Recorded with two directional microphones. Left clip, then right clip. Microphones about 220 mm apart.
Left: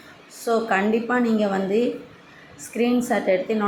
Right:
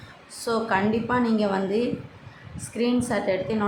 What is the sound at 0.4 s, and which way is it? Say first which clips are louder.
A woman's voice: left 3 dB; 10° left (ahead or behind).